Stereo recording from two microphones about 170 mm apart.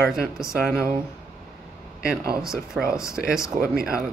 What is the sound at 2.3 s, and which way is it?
Speech, 5° right (ahead or behind).